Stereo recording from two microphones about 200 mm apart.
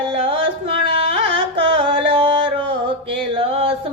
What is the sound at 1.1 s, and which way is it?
Music, 25° right (ahead or behind).